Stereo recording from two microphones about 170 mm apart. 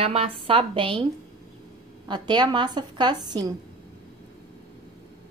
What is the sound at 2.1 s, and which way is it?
A woman's voice, 25° right (ahead or behind).